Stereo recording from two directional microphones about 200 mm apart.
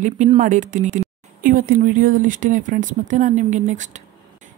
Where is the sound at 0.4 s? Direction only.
35° right (ahead or behind).